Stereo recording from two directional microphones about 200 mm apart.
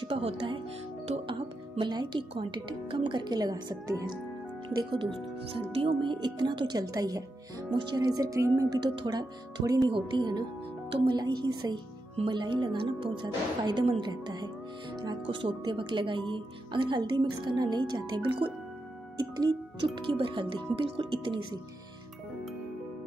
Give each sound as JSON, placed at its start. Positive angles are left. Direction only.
{"t": 0.0, "sound": "speech", "side_deg": -25}